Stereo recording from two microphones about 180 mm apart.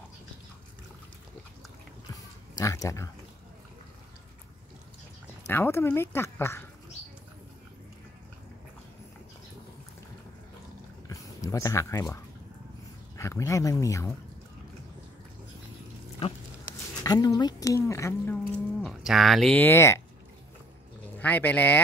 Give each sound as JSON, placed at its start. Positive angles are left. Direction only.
{"t": 2.5, "sound": "speech", "side_deg": 15}
{"t": 5.5, "sound": "speech", "side_deg": 10}
{"t": 11.1, "sound": "a sound", "side_deg": 15}
{"t": 13.2, "sound": "speech", "side_deg": 15}
{"t": 17.0, "sound": "speech", "side_deg": 20}
{"t": 18.8, "sound": "speech", "side_deg": 0}
{"t": 21.2, "sound": "speech", "side_deg": 10}